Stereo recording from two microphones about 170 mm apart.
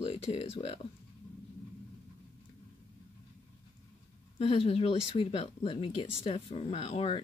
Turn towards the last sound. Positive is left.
turn(degrees=35)  # may be behind; listen again after turning